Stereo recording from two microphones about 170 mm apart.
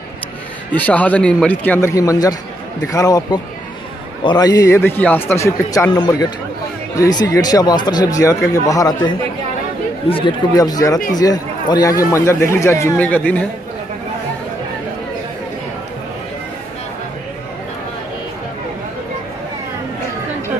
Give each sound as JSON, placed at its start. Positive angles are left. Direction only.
{"t": 0.7, "sound": "speech", "side_deg": 10}
{"t": 10.5, "sound": "speech", "side_deg": 20}